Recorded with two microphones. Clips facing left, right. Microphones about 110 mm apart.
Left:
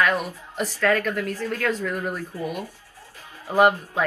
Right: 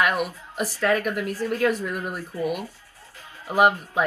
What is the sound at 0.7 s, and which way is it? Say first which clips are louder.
A woman's voice: left 1 dB; 15° right (ahead or behind).